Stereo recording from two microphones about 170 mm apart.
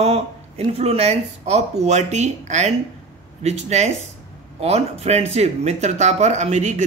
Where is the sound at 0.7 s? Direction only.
35° right (ahead or behind).